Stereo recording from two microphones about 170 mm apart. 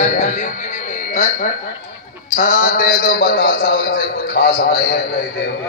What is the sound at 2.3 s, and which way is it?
A man's voice, 50° left (ahead or behind).